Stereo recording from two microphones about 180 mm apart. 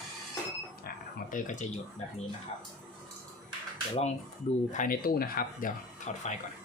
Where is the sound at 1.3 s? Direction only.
45° left (ahead or behind).